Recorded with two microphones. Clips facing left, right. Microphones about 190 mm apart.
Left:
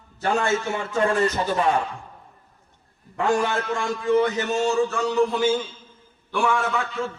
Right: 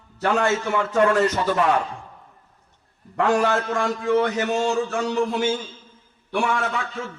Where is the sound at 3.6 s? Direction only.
55° right (ahead or behind).